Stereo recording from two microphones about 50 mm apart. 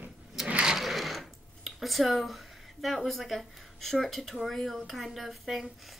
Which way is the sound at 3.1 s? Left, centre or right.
Centre.